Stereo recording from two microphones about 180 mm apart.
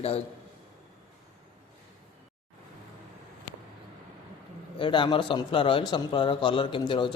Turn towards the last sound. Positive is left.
turn(degrees=25)  # may be behind; listen again after turning